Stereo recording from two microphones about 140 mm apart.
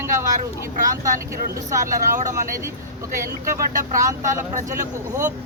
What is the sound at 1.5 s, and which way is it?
Speech, 20° right (ahead or behind).